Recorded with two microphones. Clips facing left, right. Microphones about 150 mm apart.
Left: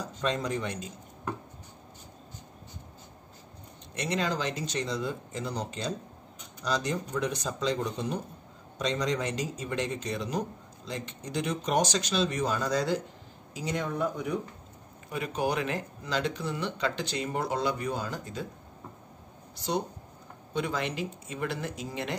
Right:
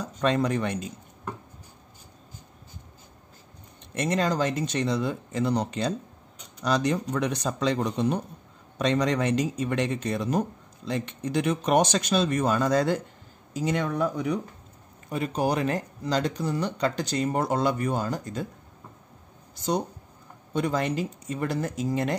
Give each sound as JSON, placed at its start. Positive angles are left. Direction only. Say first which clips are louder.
{"t": 0.2, "sound": "speech", "louder": "right 6 dB", "side_deg": -65}
{"t": 3.9, "sound": "speech", "louder": "right 5 dB", "side_deg": -50}
{"t": 10.9, "sound": "speech", "louder": "right 8 dB", "side_deg": -60}
{"t": 13.7, "sound": "speech", "louder": "right 2 dB", "side_deg": -70}
{"t": 15.0, "sound": "speech", "louder": "right 4 dB", "side_deg": -35}
{"t": 19.5, "sound": "speech", "louder": "right 4 dB", "side_deg": -45}